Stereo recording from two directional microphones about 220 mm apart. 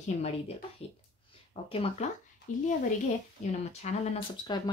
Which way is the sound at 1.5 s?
25° left (ahead or behind).